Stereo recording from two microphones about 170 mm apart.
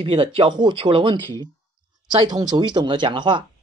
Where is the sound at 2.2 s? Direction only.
25° right (ahead or behind).